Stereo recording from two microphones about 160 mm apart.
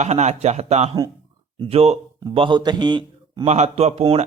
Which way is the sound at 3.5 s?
45° right (ahead or behind).